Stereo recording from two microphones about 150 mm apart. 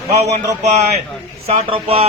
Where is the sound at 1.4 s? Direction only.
40° right (ahead or behind).